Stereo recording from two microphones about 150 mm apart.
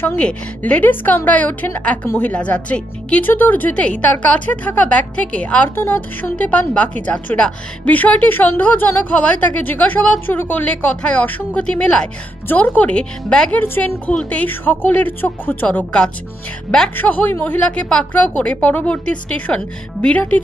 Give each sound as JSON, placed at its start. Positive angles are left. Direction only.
{"t": 0.0, "sound": "a woman's voice", "side_deg": 10}